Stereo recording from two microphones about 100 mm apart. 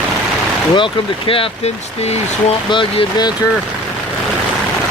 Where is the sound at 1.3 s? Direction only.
80° left.